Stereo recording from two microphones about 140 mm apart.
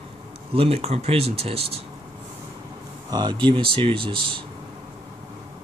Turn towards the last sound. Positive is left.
turn(degrees=-40)  # may be behind; listen again after turning